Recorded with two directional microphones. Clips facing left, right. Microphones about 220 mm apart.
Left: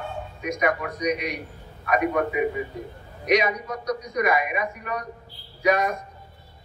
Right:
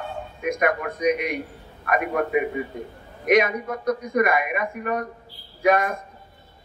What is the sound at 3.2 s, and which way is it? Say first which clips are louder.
A man's voice: right 3 dB; 55° right (ahead or behind).